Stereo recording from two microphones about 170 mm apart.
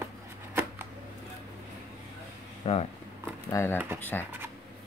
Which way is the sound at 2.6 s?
35° left (ahead or behind).